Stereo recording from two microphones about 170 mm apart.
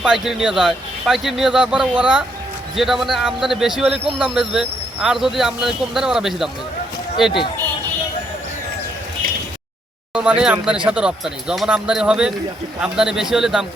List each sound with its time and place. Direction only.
0.0 s a man's voice: 5° right (ahead or behind)
10.2 s a man's voice: 5° right (ahead or behind)